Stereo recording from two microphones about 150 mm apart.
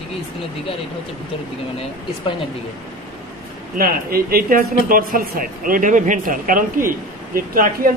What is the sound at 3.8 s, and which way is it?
Speech, 80° right.